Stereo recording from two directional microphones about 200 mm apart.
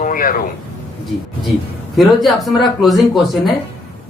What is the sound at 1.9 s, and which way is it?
Speech, centre (ahead or behind).